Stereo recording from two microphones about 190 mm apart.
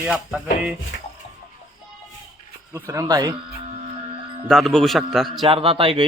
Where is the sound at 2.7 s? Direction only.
15° right (ahead or behind).